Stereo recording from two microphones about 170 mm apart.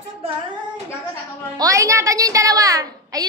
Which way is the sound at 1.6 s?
20° right (ahead or behind).